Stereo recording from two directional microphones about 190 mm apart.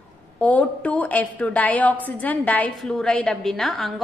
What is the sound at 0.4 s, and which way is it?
A woman's voice, 10° left (ahead or behind).